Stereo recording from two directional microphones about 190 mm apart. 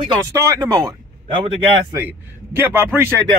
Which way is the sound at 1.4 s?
25° right (ahead or behind).